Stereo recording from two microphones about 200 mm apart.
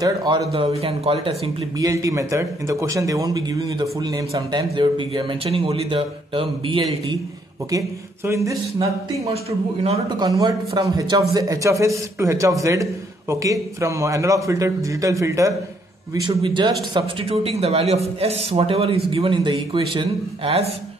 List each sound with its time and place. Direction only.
0.0 s speech: 20° right (ahead or behind)
7.7 s a man's voice: 15° right (ahead or behind)